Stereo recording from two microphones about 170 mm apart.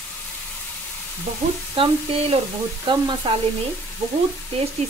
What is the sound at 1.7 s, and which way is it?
Speech, 35° right (ahead or behind).